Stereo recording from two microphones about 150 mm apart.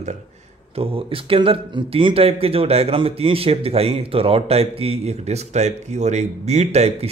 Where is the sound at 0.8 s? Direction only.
35° right (ahead or behind).